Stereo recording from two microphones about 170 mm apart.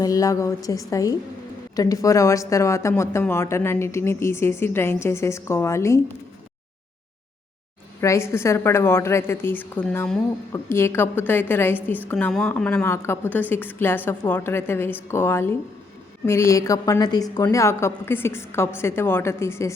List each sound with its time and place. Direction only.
0.0 s a woman's voice: 20° left (ahead or behind)
8.0 s a woman's voice: 15° left (ahead or behind)